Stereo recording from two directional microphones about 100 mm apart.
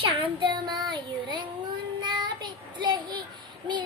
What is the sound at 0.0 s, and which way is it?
Child singing, 55° right (ahead or behind).